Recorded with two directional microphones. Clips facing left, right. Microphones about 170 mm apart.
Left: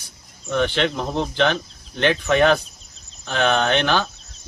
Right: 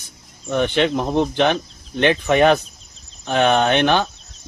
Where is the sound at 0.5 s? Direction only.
15° right (ahead or behind).